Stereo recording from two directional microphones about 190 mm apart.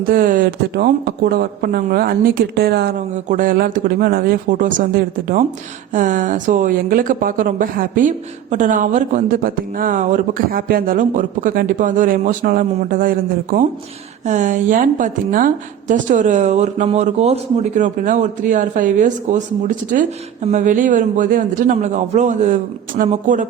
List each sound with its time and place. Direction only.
0.0 s speech: 45° right (ahead or behind)
3.2 s a woman's voice: 45° right (ahead or behind)